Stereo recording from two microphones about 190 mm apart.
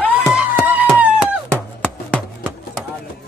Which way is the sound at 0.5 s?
10° right (ahead or behind).